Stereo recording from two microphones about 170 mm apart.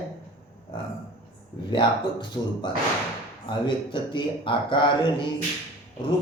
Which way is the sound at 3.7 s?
30° left (ahead or behind).